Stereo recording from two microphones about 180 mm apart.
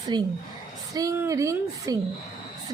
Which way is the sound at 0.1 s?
25° right (ahead or behind).